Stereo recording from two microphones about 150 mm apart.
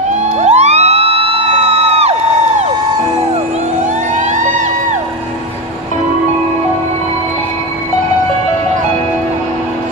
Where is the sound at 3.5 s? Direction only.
55° right (ahead or behind).